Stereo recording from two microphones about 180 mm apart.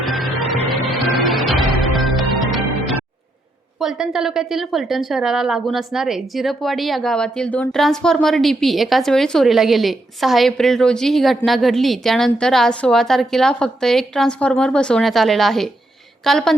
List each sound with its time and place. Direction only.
0.0 s music: centre (ahead or behind)
3.8 s a woman's voice: 5° right (ahead or behind)